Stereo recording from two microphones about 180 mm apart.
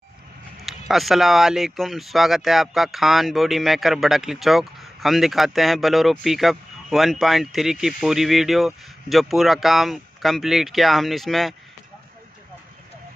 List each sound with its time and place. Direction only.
0.7 s speech: centre (ahead or behind)